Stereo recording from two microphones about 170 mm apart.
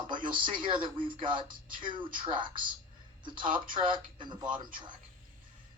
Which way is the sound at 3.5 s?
30° right (ahead or behind).